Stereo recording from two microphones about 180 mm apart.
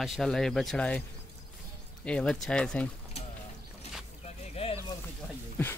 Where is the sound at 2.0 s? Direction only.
5° left (ahead or behind).